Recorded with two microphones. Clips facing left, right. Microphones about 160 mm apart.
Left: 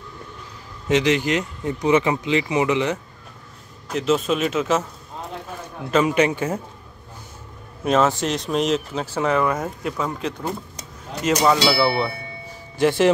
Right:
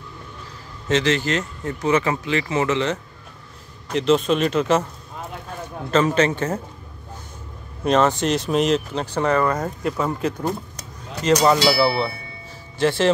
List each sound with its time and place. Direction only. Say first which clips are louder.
0.8 s speech: left 1 dB; 15° left (ahead or behind)
3.9 s speech: right 2 dB; 5° left (ahead or behind)
5.9 s speech: even; 10° left (ahead or behind)
7.8 s speech: right 1 dB; centre (ahead or behind)
12.7 s speech: left 2 dB; 15° left (ahead or behind)